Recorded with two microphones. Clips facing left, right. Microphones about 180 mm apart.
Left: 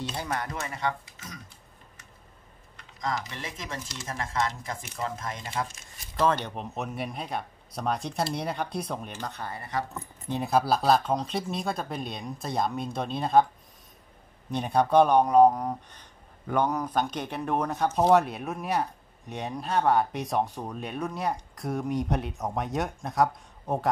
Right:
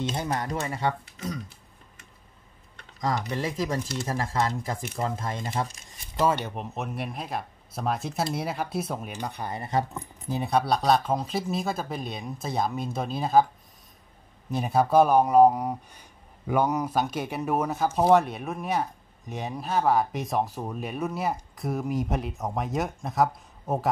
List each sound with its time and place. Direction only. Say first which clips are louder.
0.1 s speech: right 3 dB; 20° right (ahead or behind)
3.0 s speech: right 5 dB; 35° right (ahead or behind)
6.1 s speech: right 1 dB; 10° right (ahead or behind); by 9.8 s 25° right (ahead or behind)
10.2 s speech: even; centre (ahead or behind)
14.5 s speech: right 1 dB; 5° right (ahead or behind)